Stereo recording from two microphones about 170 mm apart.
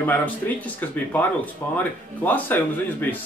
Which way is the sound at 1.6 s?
10° left (ahead or behind).